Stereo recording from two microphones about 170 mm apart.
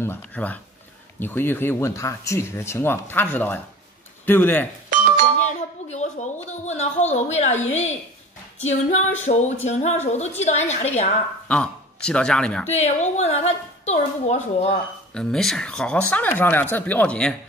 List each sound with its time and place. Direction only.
0.0 s speech: 10° left (ahead or behind)
5.4 s a woman's voice: 45° left (ahead or behind)
7.5 s speech: 10° left (ahead or behind)
8.6 s a woman's voice: 40° left (ahead or behind)
11.4 s speech: 5° left (ahead or behind)
12.6 s a woman's voice: 40° left (ahead or behind)
15.1 s speech: 5° left (ahead or behind)